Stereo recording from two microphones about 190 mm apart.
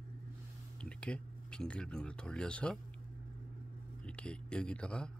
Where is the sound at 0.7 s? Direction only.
5° left (ahead or behind).